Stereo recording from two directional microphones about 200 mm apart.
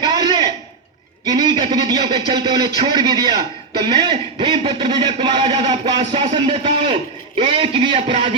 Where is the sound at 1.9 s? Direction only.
25° right (ahead or behind).